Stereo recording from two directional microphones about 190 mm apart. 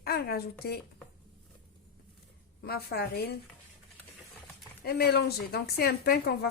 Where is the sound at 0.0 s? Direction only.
55° left (ahead or behind).